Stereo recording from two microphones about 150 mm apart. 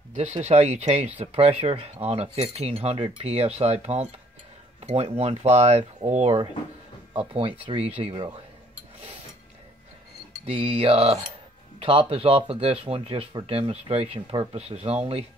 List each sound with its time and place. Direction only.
0.1 s speech: 50° right (ahead or behind)
10.4 s speech: 40° right (ahead or behind)